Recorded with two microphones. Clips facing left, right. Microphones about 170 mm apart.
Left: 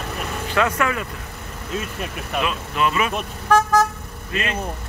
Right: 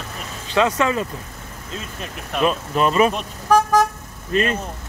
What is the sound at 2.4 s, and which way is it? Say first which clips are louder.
Speech: right 4 dB; 40° right (ahead or behind).